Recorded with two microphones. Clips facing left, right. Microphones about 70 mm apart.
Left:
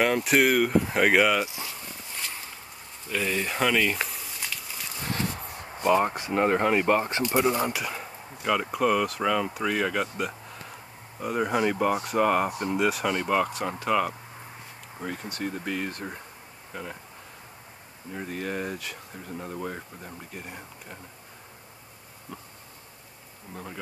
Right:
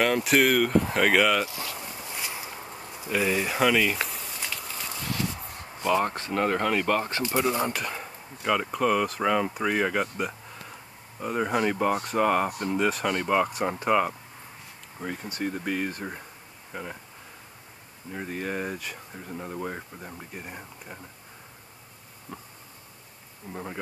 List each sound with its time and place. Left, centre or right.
0.0 s speech: centre
1.4 s speech: centre
1.8 s a sound: centre
5.0 s a sound: left
5.6 s speech: centre
7.5 s speech: centre
13.7 s speech: centre
15.3 s speech: centre
18.1 s speech: centre
23.5 s speech: centre